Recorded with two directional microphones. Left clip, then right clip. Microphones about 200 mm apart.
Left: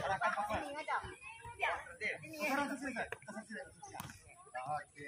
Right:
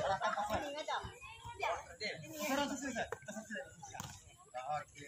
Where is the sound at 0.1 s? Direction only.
Centre (ahead or behind).